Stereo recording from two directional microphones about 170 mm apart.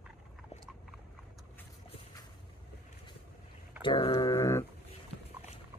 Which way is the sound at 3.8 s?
30° left (ahead or behind).